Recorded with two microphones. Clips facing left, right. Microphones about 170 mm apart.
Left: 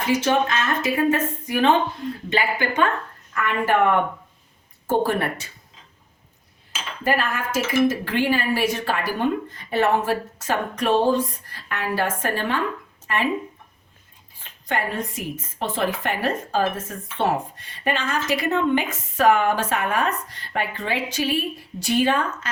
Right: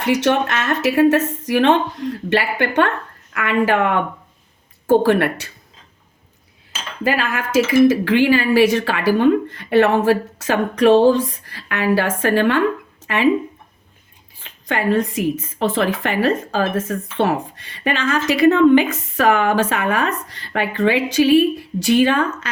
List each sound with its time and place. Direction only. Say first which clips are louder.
0.0 s a woman's voice: right 3 dB; 70° right (ahead or behind)
3.3 s a woman's voice: right 4 dB; 90° right
4.9 s a woman's voice: right 7 dB; 80° right
7.0 s a woman's voice: right 3 dB; 90° right; by 12.6 s 70° right (ahead or behind)
13.1 s a woman's voice: right 4 dB; 90° right
14.4 s a woman's voice: right 6 dB; 90° right